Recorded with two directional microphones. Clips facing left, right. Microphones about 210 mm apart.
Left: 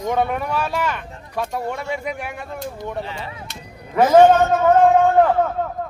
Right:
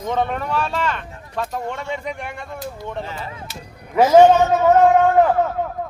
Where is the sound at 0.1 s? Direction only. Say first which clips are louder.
Even; 10° left (ahead or behind).